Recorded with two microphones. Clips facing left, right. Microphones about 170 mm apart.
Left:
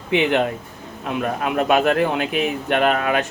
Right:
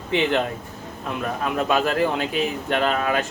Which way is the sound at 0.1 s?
60° left (ahead or behind).